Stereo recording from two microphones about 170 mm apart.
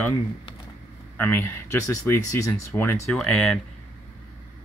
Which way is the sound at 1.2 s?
10° left (ahead or behind).